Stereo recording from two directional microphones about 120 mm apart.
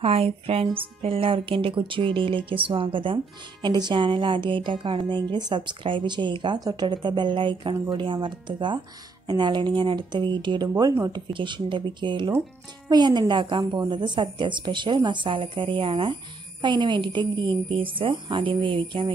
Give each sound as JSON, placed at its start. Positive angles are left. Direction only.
{"t": 0.0, "sound": "a woman's voice", "side_deg": -55}
{"t": 10.7, "sound": "a woman's voice", "side_deg": -25}